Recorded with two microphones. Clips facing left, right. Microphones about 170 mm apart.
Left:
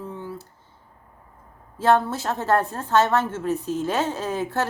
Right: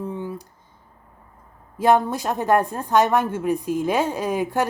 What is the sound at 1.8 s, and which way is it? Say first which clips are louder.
A woman's voice: right 2 dB; 15° right (ahead or behind).